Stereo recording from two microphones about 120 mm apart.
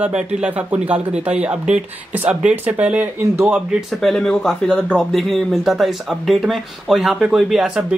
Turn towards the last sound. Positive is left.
turn(degrees=-5)  # may be behind; listen again after turning